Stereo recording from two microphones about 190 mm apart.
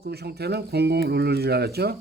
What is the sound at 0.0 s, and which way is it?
Speech, 60° right (ahead or behind).